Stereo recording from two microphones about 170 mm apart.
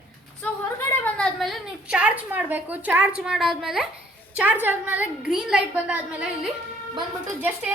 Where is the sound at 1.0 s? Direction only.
5° left (ahead or behind).